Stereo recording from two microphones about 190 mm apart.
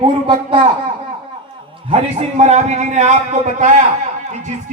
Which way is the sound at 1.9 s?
35° right (ahead or behind).